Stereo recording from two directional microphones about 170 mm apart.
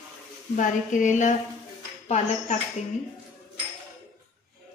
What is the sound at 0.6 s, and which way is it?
Speech, 45° left (ahead or behind).